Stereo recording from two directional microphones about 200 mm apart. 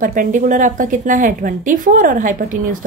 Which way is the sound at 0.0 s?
40° right (ahead or behind).